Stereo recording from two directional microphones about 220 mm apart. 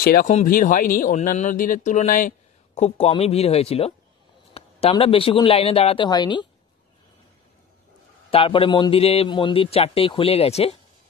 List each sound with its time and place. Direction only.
0.0 s a man's voice: 45° left (ahead or behind); by 6.4 s 20° left (ahead or behind)
8.3 s a man's voice: 25° left (ahead or behind)